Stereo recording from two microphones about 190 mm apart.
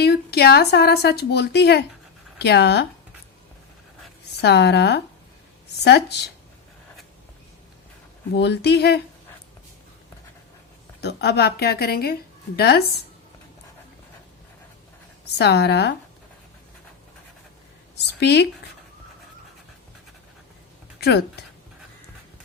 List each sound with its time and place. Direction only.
0.0 s a woman's voice: 55° left (ahead or behind)
4.4 s a woman's voice: 60° left (ahead or behind)
8.4 s a woman's voice: 60° left (ahead or behind)
11.0 s a woman's voice: 60° left (ahead or behind)
15.4 s a woman's voice: 60° left (ahead or behind)
17.9 s speech: 60° left (ahead or behind)